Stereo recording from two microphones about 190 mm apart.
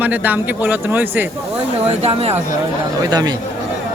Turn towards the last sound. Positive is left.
turn(degrees=-20)  # may be behind; listen again after turning